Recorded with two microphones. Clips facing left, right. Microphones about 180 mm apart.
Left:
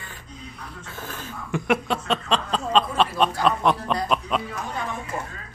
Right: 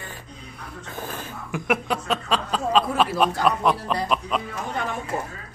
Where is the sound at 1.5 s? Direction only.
Centre (ahead or behind).